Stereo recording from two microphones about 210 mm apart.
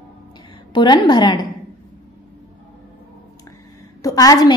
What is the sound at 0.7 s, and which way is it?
Speech, 20° left (ahead or behind).